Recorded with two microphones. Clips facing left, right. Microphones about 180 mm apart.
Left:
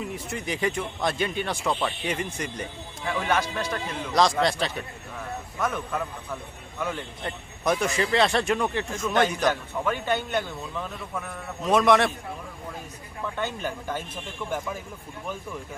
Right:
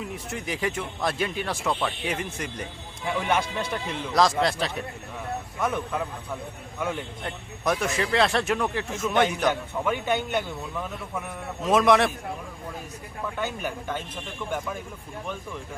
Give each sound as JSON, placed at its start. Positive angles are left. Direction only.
{"t": 0.0, "sound": "speech", "side_deg": 0}
{"t": 3.1, "sound": "a man's voice", "side_deg": -15}
{"t": 4.1, "sound": "speech", "side_deg": 0}
{"t": 5.5, "sound": "speech", "side_deg": -20}
{"t": 7.3, "sound": "speech", "side_deg": 0}
{"t": 9.5, "sound": "a man's voice", "side_deg": -15}
{"t": 11.6, "sound": "speech", "side_deg": 0}
{"t": 13.2, "sound": "a man's voice", "side_deg": -10}